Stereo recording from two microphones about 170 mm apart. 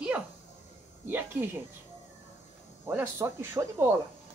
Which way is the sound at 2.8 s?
15° right (ahead or behind).